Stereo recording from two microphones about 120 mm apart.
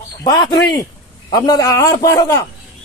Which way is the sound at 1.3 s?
30° left (ahead or behind).